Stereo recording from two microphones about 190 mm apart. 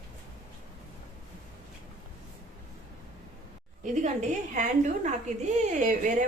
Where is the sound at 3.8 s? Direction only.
40° right (ahead or behind).